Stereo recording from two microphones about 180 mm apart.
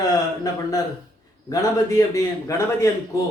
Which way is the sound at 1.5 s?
20° left (ahead or behind).